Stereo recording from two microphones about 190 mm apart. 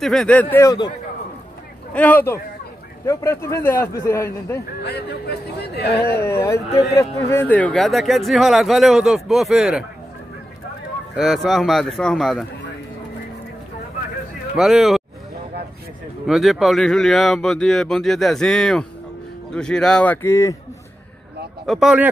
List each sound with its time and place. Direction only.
0.0 s a man's voice: centre (ahead or behind); by 0.9 s 20° left (ahead or behind)
2.0 s a man's voice: 10° left (ahead or behind)
4.8 s speech: 60° left (ahead or behind)
6.1 s a man's voice: 15° left (ahead or behind); by 9.8 s centre (ahead or behind)
11.1 s speech: centre (ahead or behind)
14.6 s speech: centre (ahead or behind)
16.3 s a man's voice: centre (ahead or behind); by 20.5 s 15° left (ahead or behind)
21.6 s speech: 5° right (ahead or behind)